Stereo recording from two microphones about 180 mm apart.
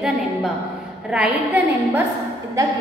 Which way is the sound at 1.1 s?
5° right (ahead or behind).